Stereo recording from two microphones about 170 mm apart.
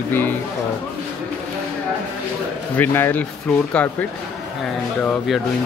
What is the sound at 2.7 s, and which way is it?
Speech, 10° left (ahead or behind).